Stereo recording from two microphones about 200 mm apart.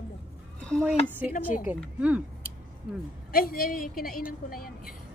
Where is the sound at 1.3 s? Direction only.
45° left (ahead or behind).